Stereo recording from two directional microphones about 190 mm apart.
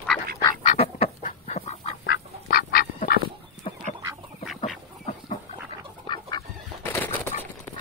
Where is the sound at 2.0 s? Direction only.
60° left (ahead or behind).